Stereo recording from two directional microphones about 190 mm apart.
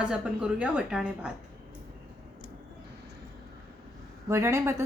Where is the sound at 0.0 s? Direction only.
5° right (ahead or behind).